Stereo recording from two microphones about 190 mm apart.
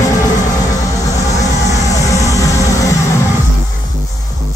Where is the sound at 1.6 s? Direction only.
15° left (ahead or behind).